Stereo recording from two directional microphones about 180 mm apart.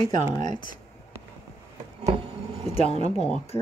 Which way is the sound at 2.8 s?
35° right (ahead or behind).